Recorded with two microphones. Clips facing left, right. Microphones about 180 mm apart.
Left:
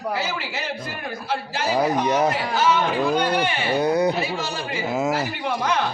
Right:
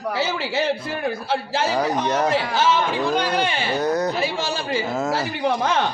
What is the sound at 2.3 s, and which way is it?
A man's voice, 25° right (ahead or behind).